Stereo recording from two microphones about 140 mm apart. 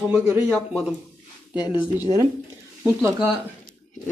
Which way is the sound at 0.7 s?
5° right (ahead or behind).